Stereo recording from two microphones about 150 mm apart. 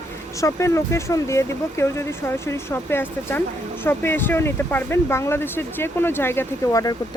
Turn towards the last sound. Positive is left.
turn(degrees=25)  # may be behind; listen again after turning